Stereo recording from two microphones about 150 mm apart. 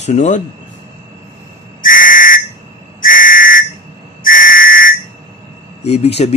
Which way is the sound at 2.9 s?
65° left (ahead or behind).